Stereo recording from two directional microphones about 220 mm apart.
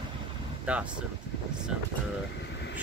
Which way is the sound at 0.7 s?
5° right (ahead or behind).